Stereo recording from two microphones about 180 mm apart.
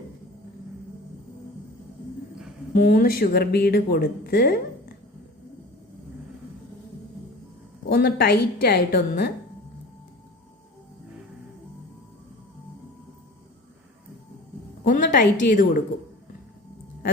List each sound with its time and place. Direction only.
2.7 s speech: 50° left (ahead or behind)
7.9 s speech: 60° left (ahead or behind)
14.8 s a sound: 45° left (ahead or behind)
15.4 s a woman's voice: 50° left (ahead or behind)